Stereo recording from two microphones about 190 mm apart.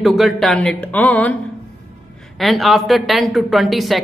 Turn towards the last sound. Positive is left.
turn(degrees=0)  # may be behind; listen again after turning